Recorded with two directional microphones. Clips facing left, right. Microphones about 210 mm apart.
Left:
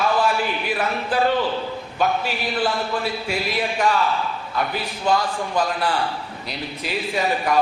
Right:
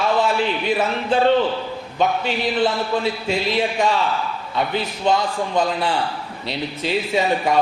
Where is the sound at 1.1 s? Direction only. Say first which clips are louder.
Right 4 dB; 25° right (ahead or behind).